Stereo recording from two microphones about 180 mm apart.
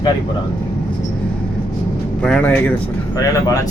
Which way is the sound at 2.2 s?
5° left (ahead or behind).